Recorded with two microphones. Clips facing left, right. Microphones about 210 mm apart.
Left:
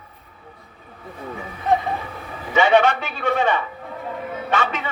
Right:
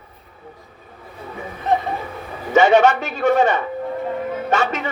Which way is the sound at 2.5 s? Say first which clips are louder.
Right 3 dB; 45° right (ahead or behind).